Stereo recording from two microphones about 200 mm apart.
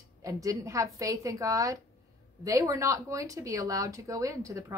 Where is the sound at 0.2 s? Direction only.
15° right (ahead or behind).